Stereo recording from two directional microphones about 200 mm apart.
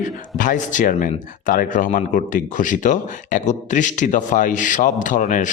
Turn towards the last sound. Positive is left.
turn(degrees=40)  # may be behind; listen again after turning